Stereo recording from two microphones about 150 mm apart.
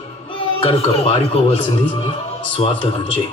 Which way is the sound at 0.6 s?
40° left (ahead or behind).